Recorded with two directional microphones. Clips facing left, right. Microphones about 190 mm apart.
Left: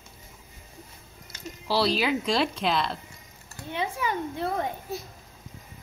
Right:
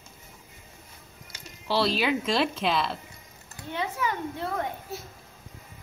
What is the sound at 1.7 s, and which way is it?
A woman's voice, centre (ahead or behind).